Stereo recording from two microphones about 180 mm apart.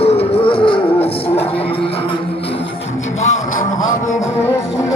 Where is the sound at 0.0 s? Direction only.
35° left (ahead or behind).